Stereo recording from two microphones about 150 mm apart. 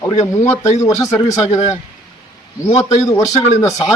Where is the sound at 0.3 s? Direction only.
20° left (ahead or behind).